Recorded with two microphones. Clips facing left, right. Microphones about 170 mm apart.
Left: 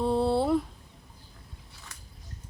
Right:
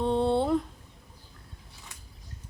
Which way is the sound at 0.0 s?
5° left (ahead or behind).